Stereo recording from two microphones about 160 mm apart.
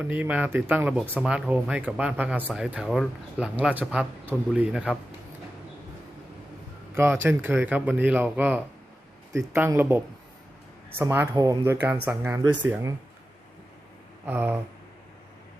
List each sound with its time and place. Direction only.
0.0 s speech: 10° right (ahead or behind)
6.9 s speech: 15° right (ahead or behind)
14.3 s speech: 10° right (ahead or behind)